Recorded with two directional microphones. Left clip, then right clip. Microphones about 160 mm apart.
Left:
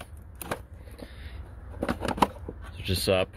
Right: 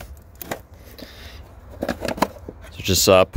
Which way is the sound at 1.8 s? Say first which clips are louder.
Right 5 dB; 15° right (ahead or behind).